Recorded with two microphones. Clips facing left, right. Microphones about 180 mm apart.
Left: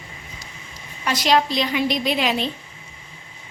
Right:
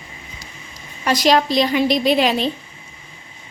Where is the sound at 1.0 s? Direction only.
40° right (ahead or behind).